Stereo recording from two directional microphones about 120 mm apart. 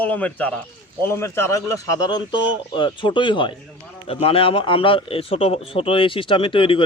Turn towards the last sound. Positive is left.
turn(degrees=45)  # may be behind; listen again after turning